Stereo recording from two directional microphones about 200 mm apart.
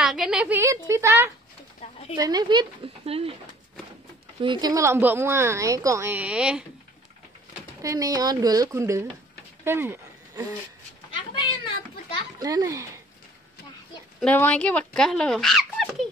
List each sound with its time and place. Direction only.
0.0 s a woman's voice: centre (ahead or behind); by 3.3 s 30° right (ahead or behind)
4.4 s a woman's voice: 20° right (ahead or behind); by 6.6 s 5° right (ahead or behind)
7.8 s a woman's voice: 15° right (ahead or behind)
9.7 s a sound: 10° right (ahead or behind)
12.4 s speech: 20° right (ahead or behind)
14.2 s speech: 5° left (ahead or behind)